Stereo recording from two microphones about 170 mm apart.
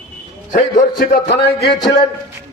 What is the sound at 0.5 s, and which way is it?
A man's voice, 55° left (ahead or behind).